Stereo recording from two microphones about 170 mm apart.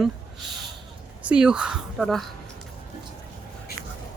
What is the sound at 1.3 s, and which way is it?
Speech, 5° right (ahead or behind).